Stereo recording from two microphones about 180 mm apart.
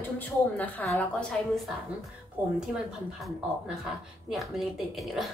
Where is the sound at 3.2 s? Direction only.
Centre (ahead or behind).